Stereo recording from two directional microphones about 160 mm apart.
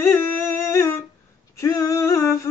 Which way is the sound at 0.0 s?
15° left (ahead or behind).